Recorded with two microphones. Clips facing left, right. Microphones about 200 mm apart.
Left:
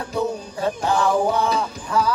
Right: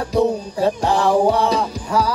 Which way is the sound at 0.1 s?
35° right (ahead or behind).